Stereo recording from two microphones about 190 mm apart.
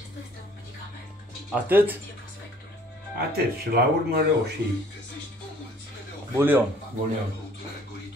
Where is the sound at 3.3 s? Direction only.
55° right (ahead or behind).